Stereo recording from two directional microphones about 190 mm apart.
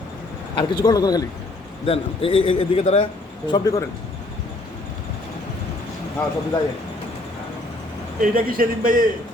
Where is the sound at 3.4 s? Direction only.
20° left (ahead or behind).